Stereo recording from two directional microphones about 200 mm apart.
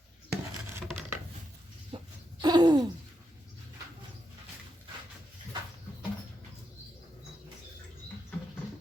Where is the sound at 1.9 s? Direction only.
25° right (ahead or behind).